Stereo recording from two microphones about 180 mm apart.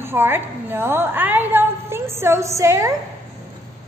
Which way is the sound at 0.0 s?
10° right (ahead or behind).